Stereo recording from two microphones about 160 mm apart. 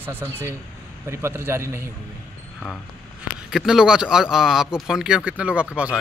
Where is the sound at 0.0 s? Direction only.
15° right (ahead or behind).